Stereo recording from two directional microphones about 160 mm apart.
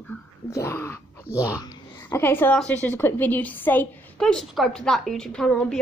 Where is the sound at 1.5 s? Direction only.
15° left (ahead or behind).